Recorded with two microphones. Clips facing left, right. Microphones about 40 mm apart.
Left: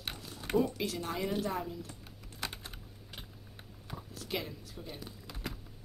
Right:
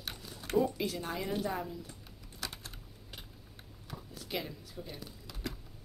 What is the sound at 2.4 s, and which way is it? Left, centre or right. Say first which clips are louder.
Typing: left 2 dB; left.